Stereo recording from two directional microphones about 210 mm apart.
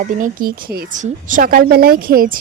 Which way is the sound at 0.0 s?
35° right (ahead or behind).